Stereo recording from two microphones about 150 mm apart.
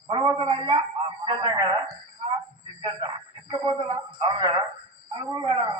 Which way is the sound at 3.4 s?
30° right (ahead or behind).